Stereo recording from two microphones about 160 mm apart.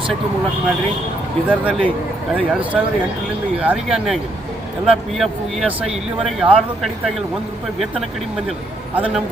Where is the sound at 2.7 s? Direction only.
Centre (ahead or behind).